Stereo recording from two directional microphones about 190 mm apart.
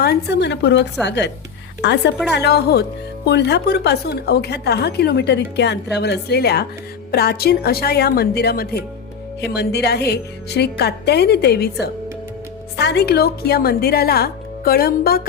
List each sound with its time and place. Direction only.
0.0 s a woman's voice: 60° left (ahead or behind)